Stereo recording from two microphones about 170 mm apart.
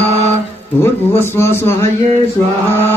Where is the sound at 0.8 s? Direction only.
15° left (ahead or behind).